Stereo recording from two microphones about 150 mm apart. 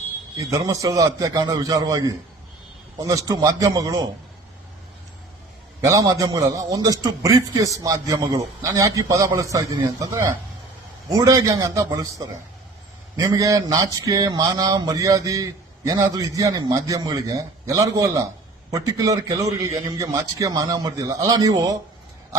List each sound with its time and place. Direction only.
0.3 s a man's voice: 20° right (ahead or behind)
5.8 s a man's voice: 20° right (ahead or behind)